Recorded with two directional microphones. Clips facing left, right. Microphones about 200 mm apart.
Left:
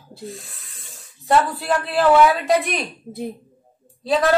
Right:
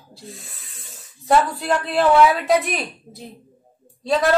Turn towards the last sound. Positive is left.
turn(degrees=0)  # may be behind; listen again after turning